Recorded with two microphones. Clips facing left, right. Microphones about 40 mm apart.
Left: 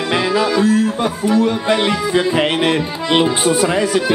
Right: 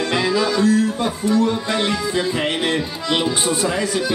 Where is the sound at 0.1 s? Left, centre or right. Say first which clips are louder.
Left 5 dB; left.